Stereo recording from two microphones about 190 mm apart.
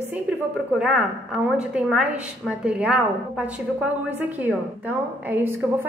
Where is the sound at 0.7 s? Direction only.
5° right (ahead or behind).